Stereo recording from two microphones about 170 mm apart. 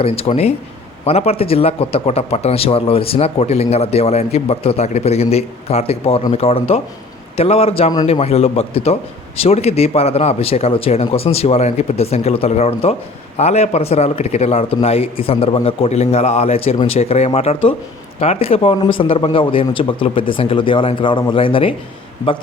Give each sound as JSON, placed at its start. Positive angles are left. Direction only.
{"t": 0.0, "sound": "speech", "side_deg": 35}